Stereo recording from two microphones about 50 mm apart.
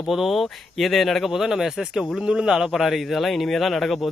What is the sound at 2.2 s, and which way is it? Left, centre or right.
Speech, centre.